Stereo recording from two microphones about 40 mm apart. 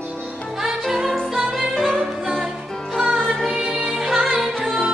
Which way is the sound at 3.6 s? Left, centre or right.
Centre.